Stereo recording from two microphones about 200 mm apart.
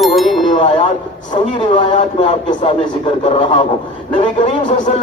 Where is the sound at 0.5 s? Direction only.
30° left (ahead or behind).